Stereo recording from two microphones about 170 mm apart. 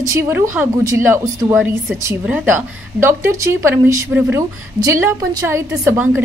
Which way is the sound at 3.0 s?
15° right (ahead or behind).